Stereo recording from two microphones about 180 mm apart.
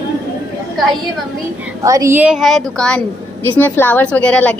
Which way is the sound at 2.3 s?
Centre (ahead or behind).